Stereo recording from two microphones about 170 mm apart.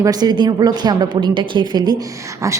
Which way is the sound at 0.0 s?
25° right (ahead or behind).